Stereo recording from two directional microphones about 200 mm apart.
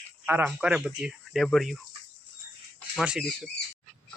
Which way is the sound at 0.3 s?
10° right (ahead or behind).